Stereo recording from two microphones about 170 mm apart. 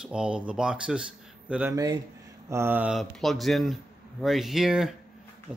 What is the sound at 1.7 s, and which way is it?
A man's voice, 20° right (ahead or behind).